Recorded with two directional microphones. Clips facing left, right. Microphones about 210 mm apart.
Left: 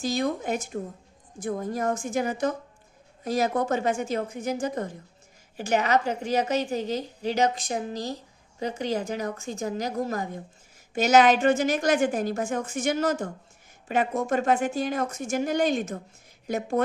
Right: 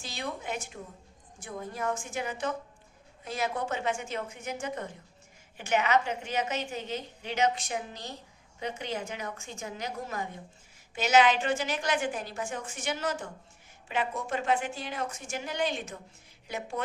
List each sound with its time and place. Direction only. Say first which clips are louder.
0.0 s a woman's voice: left 11 dB; 40° left (ahead or behind)